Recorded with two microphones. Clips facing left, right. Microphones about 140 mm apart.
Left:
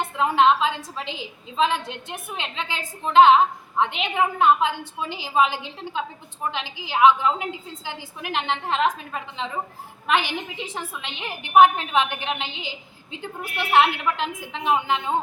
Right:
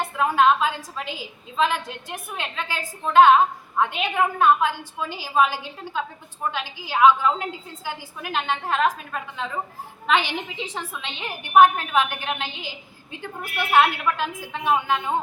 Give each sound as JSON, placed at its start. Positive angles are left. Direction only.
{"t": 0.2, "sound": "a woman's voice", "side_deg": 25}
{"t": 10.6, "sound": "a woman's voice", "side_deg": 10}